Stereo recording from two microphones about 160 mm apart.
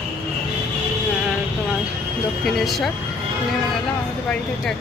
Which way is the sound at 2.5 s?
Centre (ahead or behind).